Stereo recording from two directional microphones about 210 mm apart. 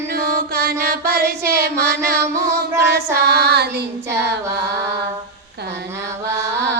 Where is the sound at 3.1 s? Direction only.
50° right (ahead or behind).